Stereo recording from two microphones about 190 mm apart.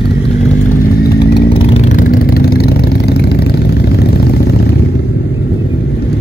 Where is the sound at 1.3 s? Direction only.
30° left (ahead or behind); by 4.6 s 55° left (ahead or behind).